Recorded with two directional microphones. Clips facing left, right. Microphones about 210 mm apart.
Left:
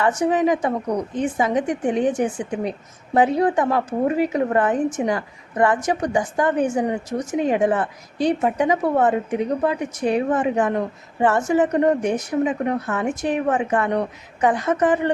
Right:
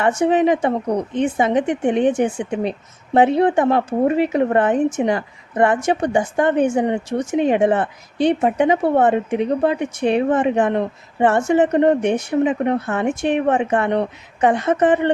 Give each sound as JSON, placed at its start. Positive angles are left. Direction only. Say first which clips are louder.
{"t": 0.0, "sound": "speech", "louder": "right 3 dB", "side_deg": -25}